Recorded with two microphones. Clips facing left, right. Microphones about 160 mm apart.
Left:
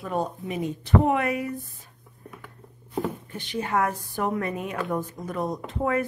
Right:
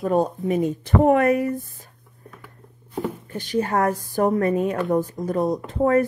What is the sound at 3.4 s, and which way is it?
A woman's voice, 40° right (ahead or behind).